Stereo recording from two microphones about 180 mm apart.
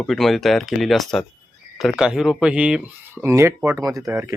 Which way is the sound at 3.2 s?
15° right (ahead or behind).